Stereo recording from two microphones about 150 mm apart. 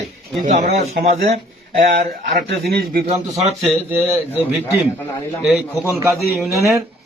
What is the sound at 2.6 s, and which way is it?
Speech, 90° right.